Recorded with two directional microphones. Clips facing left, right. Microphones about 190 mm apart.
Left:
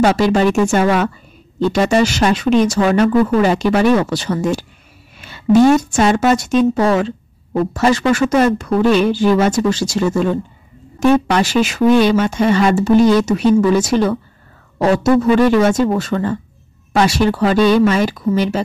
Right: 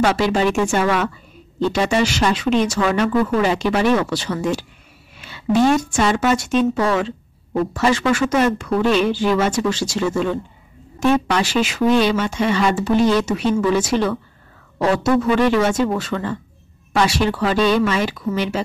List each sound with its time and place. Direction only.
0.0 s speech: 40° left (ahead or behind)
5.9 s speech: 40° left (ahead or behind)
15.6 s speech: 40° left (ahead or behind)